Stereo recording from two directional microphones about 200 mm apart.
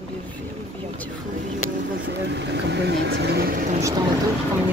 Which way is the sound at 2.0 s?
60° right (ahead or behind).